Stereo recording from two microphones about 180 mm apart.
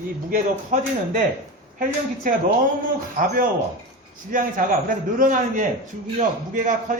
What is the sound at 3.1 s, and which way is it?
A man's voice, 50° right (ahead or behind).